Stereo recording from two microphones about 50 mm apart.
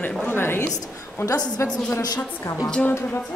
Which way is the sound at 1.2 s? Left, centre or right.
Left.